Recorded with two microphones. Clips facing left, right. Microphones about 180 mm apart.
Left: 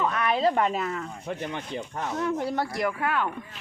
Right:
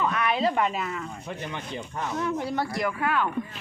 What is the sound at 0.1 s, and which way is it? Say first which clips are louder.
Speech: left 1 dB; 40° left (ahead or behind).